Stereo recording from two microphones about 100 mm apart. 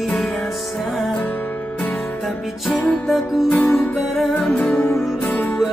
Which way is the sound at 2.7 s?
5° left (ahead or behind).